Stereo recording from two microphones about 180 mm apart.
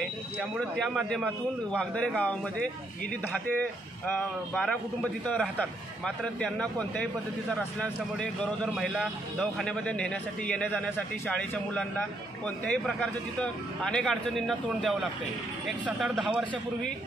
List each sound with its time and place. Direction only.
0.4 s a man's voice: centre (ahead or behind)
4.2 s a man's voice: 5° left (ahead or behind)